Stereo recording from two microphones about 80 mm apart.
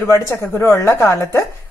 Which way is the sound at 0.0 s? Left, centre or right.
Left.